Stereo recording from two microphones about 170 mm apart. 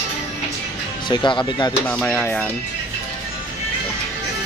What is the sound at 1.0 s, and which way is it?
Speech, 25° left (ahead or behind).